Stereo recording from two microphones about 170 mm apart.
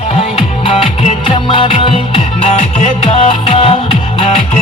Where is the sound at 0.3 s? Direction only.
35° left (ahead or behind).